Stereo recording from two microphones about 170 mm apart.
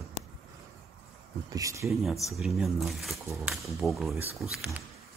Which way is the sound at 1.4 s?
20° right (ahead or behind).